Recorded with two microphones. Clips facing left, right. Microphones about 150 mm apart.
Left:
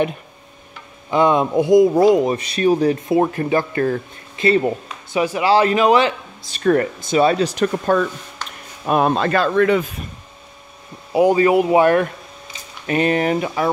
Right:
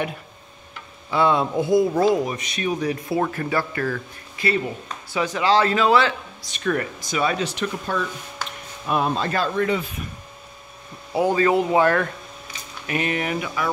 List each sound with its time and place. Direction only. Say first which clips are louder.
1.1 s speech: left 4 dB; 15° left (ahead or behind)
2.2 s speech: left 9 dB; 30° left (ahead or behind)
3.1 s speech: left 6 dB; 20° left (ahead or behind)
5.1 s speech: left 4 dB; 10° left (ahead or behind)
6.5 s speech: left 8 dB; 40° left (ahead or behind)
7.0 s speech: left 8 dB; 30° left (ahead or behind); by 9.8 s 75° left (ahead or behind)
11.1 s speech: left 5 dB; 15° left (ahead or behind)
12.8 s speech: left 7 dB; 35° left (ahead or behind)